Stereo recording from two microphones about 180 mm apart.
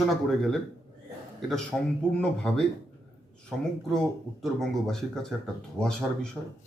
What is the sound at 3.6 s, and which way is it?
Speech, centre (ahead or behind).